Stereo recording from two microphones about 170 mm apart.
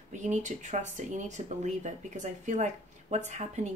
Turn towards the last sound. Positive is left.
turn(degrees=-45)  # may be behind; listen again after turning